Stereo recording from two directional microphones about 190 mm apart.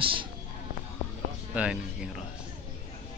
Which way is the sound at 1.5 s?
5° right (ahead or behind).